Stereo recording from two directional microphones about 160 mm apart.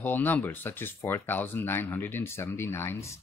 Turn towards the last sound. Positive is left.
turn(degrees=15)  # may be behind; listen again after turning